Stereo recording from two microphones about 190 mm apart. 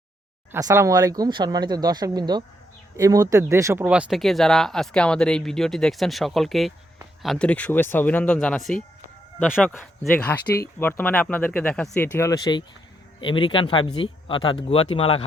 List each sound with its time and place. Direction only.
0.5 s speech: 15° right (ahead or behind); by 15.2 s 30° left (ahead or behind)